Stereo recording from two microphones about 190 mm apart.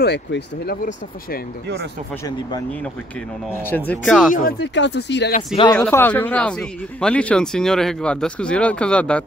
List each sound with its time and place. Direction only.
0.0 s speech: 60° left (ahead or behind)
3.6 s speech: 10° left (ahead or behind)
4.3 s speech: 50° left (ahead or behind); by 5.3 s 65° left (ahead or behind)
5.8 s speech: 10° left (ahead or behind)